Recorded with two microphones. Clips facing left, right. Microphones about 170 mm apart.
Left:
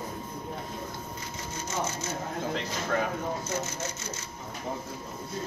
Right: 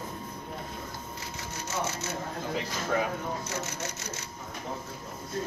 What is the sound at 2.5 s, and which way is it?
Speech, 5° right (ahead or behind).